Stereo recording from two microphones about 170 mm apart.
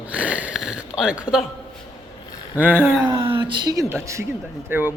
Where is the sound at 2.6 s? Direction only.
10° right (ahead or behind).